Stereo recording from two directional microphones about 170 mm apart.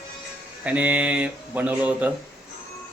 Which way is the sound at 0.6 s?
10° right (ahead or behind).